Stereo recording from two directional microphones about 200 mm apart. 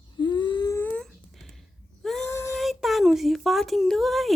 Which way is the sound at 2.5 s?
Centre (ahead or behind).